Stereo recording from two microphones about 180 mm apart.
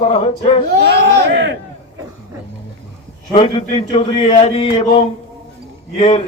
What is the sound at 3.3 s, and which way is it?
A man's voice, 30° left (ahead or behind).